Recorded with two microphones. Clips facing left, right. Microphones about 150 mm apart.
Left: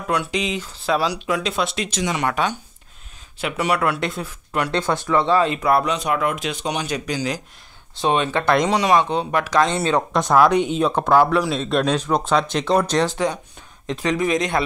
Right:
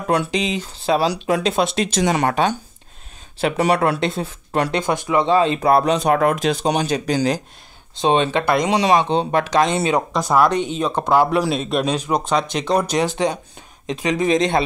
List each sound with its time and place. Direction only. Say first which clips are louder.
0.0 s speech: right 3 dB; 30° right (ahead or behind)
1.8 s speech: right 5 dB; 45° right (ahead or behind)
3.3 s speech: right 4 dB; 35° right (ahead or behind)
4.6 s speech: right 1 dB; 15° right (ahead or behind)
5.6 s speech: right 3 dB; 30° right (ahead or behind)
8.0 s speech: right 3 dB; 25° right (ahead or behind)
10.1 s speech: left 3 dB; centre (ahead or behind)
11.0 s speech: right 1 dB; 15° right (ahead or behind); by 12.8 s centre (ahead or behind)
12.9 s speech: right 1 dB; 15° right (ahead or behind)